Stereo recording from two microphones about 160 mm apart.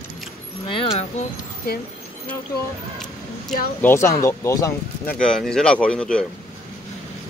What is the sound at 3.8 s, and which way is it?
Speech, 15° left (ahead or behind).